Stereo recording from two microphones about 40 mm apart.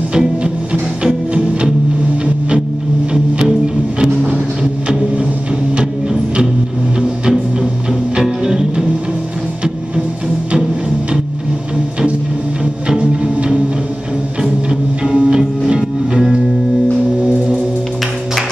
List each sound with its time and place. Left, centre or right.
0.1 s music: right
4.0 s vehicle: right
8.2 s music: centre
12.8 s music: right